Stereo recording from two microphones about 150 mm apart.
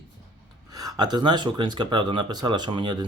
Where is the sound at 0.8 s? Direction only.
25° right (ahead or behind).